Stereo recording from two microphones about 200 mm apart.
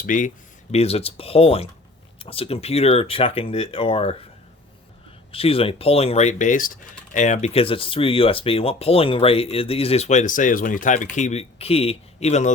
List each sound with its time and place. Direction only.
0.0 s speech: 40° left (ahead or behind)
0.7 s speech: 30° left (ahead or behind)
5.3 s speech: 30° left (ahead or behind)